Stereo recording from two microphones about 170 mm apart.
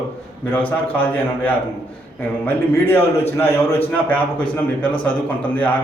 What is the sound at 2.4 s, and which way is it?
A man's voice, 10° left (ahead or behind).